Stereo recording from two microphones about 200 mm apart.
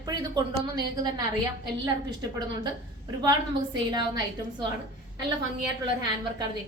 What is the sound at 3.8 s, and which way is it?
Speech, 20° right (ahead or behind).